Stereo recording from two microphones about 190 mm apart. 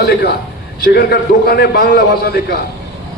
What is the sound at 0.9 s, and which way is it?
A man's voice, 55° left (ahead or behind).